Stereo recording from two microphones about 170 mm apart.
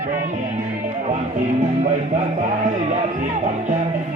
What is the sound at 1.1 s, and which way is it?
Music, 45° right (ahead or behind).